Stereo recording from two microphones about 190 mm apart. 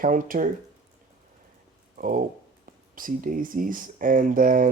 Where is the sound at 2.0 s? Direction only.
45° right (ahead or behind).